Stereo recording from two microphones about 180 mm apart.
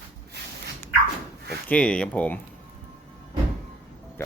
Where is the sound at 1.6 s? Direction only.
5° left (ahead or behind).